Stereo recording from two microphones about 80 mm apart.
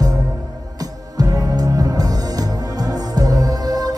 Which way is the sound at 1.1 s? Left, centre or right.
Right.